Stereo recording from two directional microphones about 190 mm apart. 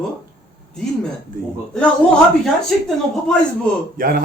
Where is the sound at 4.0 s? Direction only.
50° right (ahead or behind).